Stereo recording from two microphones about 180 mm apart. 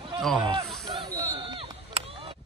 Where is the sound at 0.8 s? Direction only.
20° right (ahead or behind).